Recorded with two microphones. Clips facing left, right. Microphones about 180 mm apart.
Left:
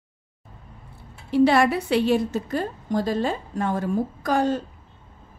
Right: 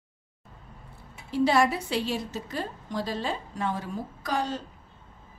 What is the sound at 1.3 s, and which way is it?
A woman's voice, 65° left (ahead or behind).